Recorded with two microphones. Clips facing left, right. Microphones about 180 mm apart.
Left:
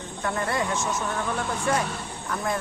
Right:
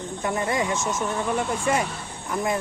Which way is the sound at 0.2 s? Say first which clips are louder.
Right 2 dB; 15° right (ahead or behind).